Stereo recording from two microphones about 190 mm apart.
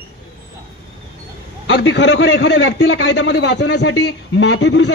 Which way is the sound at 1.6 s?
70° left (ahead or behind).